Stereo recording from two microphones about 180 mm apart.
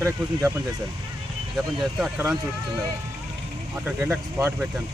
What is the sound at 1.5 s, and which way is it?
Speech, 5° right (ahead or behind).